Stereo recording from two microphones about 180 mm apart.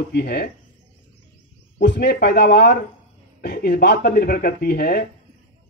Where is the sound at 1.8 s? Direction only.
70° left (ahead or behind).